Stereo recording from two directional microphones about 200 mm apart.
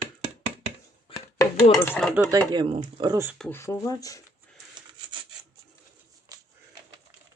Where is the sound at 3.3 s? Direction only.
5° left (ahead or behind).